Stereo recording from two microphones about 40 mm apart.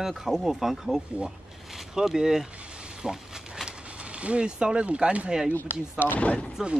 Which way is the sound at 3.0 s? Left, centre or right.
Centre.